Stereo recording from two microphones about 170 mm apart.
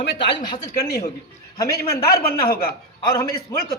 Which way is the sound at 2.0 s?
65° left (ahead or behind).